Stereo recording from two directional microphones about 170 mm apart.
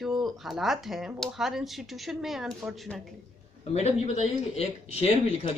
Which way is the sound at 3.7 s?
40° left (ahead or behind).